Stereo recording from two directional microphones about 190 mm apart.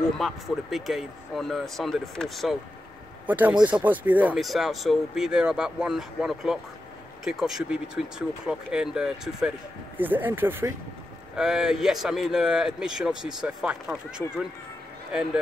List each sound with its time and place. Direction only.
0.2 s speech: centre (ahead or behind)